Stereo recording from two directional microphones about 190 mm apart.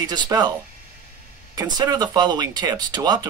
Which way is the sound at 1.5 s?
20° right (ahead or behind).